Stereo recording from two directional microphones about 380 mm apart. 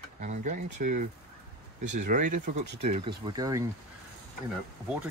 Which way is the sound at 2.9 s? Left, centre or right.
Centre.